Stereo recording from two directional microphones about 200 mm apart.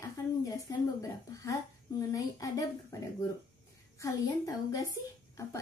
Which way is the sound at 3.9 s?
15° left (ahead or behind).